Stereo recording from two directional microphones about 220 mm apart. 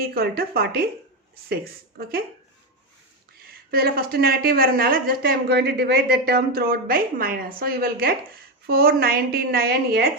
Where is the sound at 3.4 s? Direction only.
45° right (ahead or behind).